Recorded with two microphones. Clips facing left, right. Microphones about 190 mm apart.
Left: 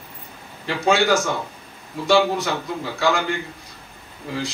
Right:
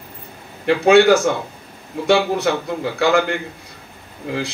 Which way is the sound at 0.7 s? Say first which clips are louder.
Right 7 dB; 60° right (ahead or behind).